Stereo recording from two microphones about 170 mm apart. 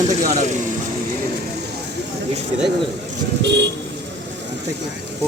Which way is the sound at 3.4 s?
90° right.